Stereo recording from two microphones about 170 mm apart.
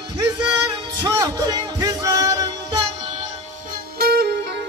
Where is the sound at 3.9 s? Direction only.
65° right (ahead or behind).